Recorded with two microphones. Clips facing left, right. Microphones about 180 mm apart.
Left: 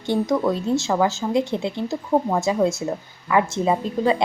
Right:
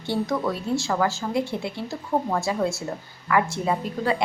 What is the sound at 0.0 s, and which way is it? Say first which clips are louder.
A woman's voice: left 4 dB; 20° left (ahead or behind).